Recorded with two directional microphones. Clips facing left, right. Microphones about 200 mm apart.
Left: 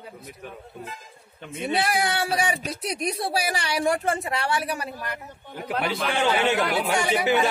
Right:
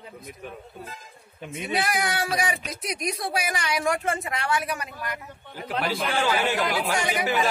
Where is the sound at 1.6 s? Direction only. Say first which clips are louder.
Left 2 dB; 30° left (ahead or behind).